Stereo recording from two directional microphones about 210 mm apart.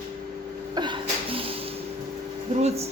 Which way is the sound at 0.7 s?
20° right (ahead or behind).